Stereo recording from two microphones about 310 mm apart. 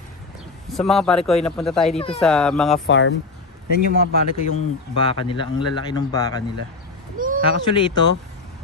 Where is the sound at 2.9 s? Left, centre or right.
Left.